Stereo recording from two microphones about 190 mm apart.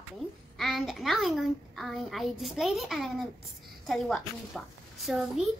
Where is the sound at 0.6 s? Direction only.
Centre (ahead or behind).